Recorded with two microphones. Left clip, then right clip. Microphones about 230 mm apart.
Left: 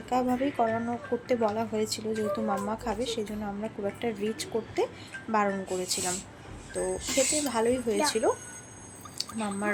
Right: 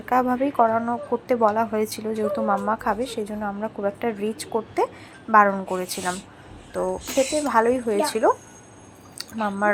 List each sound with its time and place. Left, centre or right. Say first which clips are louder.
0.1 s a woman's voice: right 7 dB; centre
7.4 s a woman's voice: right 7 dB; centre
9.1 s a sound: right 7 dB; centre